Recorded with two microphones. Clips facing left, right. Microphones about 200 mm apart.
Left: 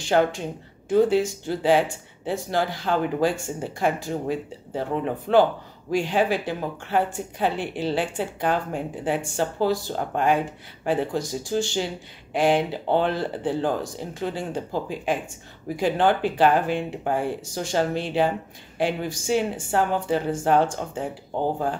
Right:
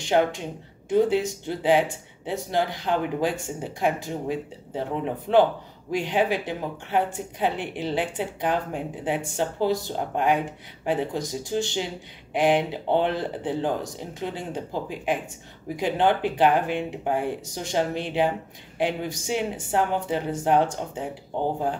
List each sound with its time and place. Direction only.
0.0 s speech: 20° right (ahead or behind)